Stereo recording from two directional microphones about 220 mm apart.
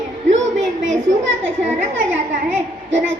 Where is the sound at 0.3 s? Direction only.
35° right (ahead or behind).